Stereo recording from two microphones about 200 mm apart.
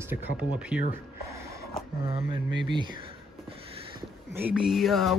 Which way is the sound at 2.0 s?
25° right (ahead or behind).